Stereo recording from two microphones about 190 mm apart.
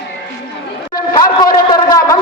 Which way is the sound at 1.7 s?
20° left (ahead or behind).